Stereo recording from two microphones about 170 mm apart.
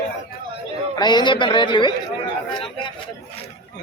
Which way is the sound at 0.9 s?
25° left (ahead or behind).